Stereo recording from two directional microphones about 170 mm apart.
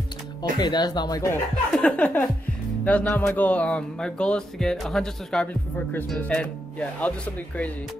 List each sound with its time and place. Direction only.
0.4 s speech: 25° left (ahead or behind)
1.7 s music: 5° left (ahead or behind)